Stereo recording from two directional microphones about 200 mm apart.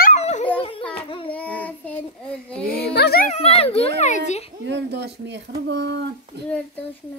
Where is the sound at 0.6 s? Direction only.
25° left (ahead or behind).